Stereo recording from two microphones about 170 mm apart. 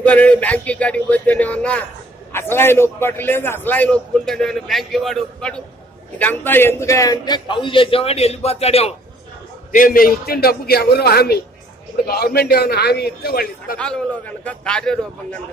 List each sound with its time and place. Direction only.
0.0 s a man's voice: 10° left (ahead or behind); by 8.9 s 35° left (ahead or behind)
9.7 s a man's voice: 55° left (ahead or behind)
13.7 s a man's voice: 5° left (ahead or behind)